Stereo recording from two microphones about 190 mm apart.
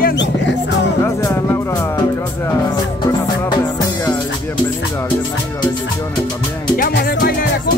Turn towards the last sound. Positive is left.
turn(degrees=50)  # may be behind; listen again after turning